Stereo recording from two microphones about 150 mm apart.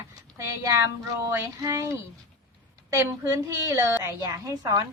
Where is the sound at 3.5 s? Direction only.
15° right (ahead or behind).